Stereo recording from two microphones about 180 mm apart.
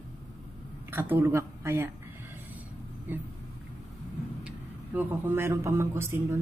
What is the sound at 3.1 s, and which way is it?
Speech, 10° right (ahead or behind).